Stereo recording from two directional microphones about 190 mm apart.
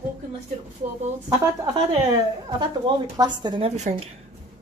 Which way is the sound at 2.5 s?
25° right (ahead or behind).